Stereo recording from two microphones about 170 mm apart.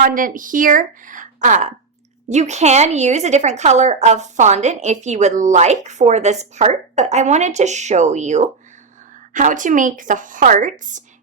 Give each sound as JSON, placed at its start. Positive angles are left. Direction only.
{"t": 0.0, "sound": "a woman's voice", "side_deg": -55}